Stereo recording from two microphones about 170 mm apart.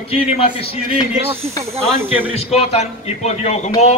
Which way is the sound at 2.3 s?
40° left (ahead or behind).